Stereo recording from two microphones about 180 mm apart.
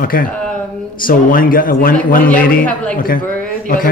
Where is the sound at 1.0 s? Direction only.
50° left (ahead or behind).